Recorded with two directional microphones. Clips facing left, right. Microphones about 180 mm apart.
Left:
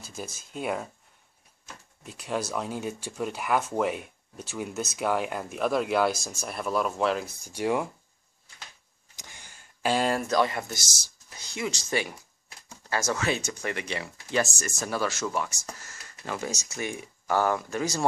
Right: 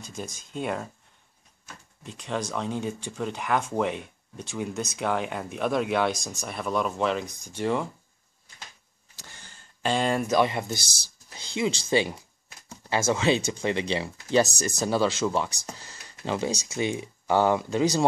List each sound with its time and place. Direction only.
0.0 s speech: 5° left (ahead or behind)
2.0 s speech: 5° left (ahead or behind)
9.1 s a sound: 15° left (ahead or behind)
10.2 s speech: 20° right (ahead or behind)